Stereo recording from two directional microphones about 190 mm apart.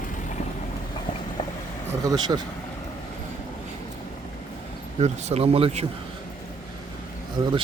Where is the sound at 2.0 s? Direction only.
20° right (ahead or behind).